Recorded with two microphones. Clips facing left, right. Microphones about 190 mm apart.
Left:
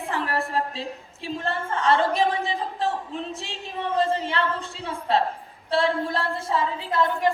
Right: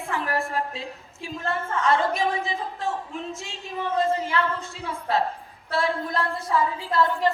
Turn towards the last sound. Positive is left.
turn(degrees=15)  # may be behind; listen again after turning